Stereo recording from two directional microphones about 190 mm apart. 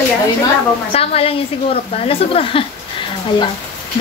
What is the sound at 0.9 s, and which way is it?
A woman's voice, 30° left (ahead or behind).